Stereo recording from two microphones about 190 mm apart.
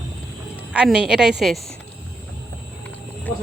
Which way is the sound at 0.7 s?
5° right (ahead or behind).